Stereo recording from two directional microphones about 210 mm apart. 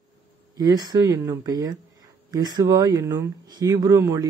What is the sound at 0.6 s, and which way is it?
Speech, 20° right (ahead or behind).